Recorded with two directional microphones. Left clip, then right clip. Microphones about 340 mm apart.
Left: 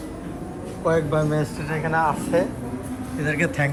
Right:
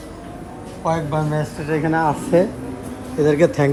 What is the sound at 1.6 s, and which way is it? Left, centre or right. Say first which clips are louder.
Speech: right 4 dB; right.